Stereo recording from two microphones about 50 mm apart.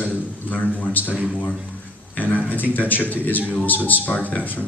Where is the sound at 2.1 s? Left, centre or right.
Left.